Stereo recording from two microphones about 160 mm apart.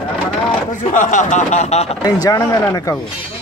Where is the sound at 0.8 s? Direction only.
50° left (ahead or behind).